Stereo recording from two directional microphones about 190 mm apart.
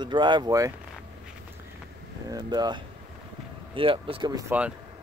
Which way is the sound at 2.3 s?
20° right (ahead or behind).